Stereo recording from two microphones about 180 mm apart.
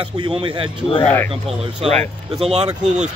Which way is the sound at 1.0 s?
10° left (ahead or behind).